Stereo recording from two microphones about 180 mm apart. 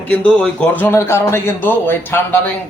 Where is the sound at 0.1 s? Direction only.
5° left (ahead or behind).